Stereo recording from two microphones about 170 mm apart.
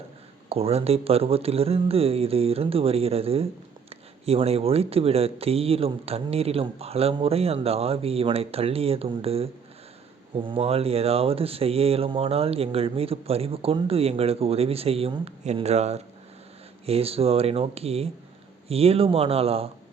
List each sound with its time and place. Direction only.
0.4 s speech: 35° right (ahead or behind)